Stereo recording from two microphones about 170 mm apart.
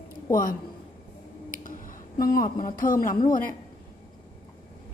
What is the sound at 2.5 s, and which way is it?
Speech, 55° left (ahead or behind).